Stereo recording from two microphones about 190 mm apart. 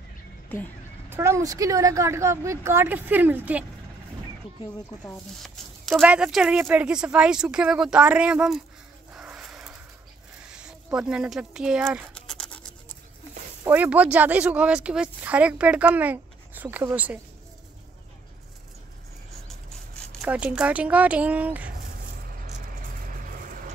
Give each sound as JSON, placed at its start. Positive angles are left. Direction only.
{"t": 0.5, "sound": "speech", "side_deg": 10}
{"t": 1.1, "sound": "speech", "side_deg": -15}
{"t": 5.4, "sound": "speech", "side_deg": -5}
{"t": 9.1, "sound": "dog", "side_deg": -5}
{"t": 10.5, "sound": "speech", "side_deg": -5}
{"t": 12.1, "sound": "scratch", "side_deg": 5}
{"t": 13.7, "sound": "speech", "side_deg": -10}
{"t": 20.2, "sound": "speech", "side_deg": -5}
{"t": 23.0, "sound": "vehicle", "side_deg": -45}